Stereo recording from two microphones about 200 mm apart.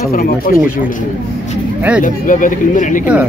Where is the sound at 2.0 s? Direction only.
40° left (ahead or behind).